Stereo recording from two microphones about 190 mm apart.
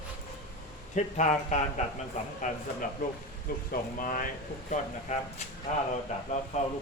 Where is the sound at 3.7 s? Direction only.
45° left (ahead or behind).